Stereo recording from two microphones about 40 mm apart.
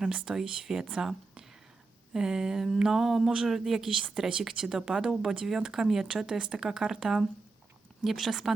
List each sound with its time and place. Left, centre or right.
0.1 s speech: centre